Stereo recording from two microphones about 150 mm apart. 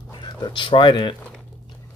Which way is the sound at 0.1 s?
30° left (ahead or behind).